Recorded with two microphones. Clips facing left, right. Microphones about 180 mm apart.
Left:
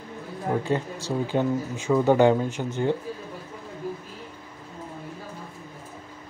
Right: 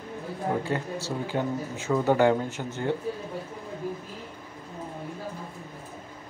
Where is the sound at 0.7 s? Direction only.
15° left (ahead or behind).